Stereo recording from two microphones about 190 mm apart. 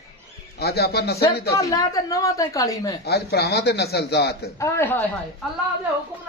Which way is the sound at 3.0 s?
55° left (ahead or behind).